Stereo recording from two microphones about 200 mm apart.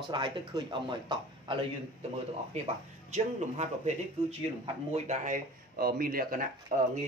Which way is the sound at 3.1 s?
35° right (ahead or behind).